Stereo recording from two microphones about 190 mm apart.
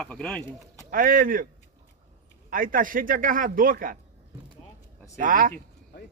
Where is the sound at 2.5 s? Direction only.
45° right (ahead or behind).